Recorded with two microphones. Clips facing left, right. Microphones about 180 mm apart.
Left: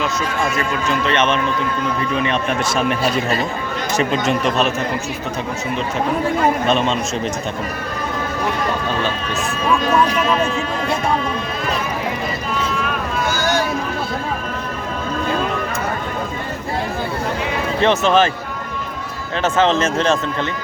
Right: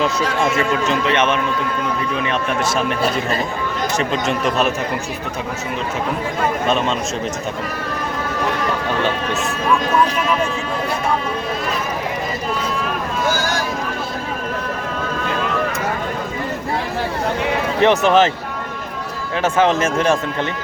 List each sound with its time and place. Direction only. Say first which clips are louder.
0.5 s a man's voice: right 2 dB; 20° right (ahead or behind)
1.1 s speech: left 1 dB; 10° right (ahead or behind)
4.1 s speech: left 1 dB; centre (ahead or behind)
6.7 s speech: left 1 dB; 5° right (ahead or behind)
13.3 s boat: left 3 dB; 90° right
17.7 s speech: right 1 dB; 15° right (ahead or behind)
19.4 s speech: even; 10° right (ahead or behind)